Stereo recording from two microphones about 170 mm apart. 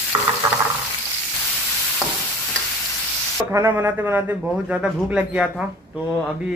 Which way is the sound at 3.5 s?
15° right (ahead or behind).